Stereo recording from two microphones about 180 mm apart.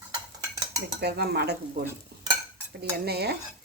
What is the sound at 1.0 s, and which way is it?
Stir, 65° right (ahead or behind).